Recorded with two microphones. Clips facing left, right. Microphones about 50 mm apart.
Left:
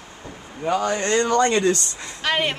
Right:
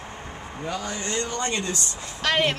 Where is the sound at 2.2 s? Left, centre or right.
Centre.